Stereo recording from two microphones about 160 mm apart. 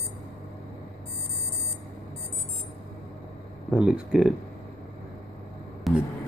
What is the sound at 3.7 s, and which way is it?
Speech, 5° right (ahead or behind).